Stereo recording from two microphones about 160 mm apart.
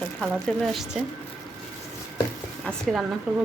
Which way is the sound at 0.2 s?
Centre (ahead or behind).